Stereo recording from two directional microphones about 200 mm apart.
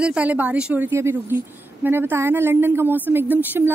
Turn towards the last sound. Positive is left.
turn(degrees=-10)  # may be behind; listen again after turning